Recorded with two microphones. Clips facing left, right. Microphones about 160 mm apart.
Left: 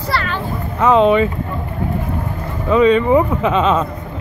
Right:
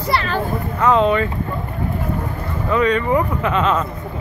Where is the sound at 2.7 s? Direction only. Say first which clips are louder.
Left 5 dB; 20° left (ahead or behind).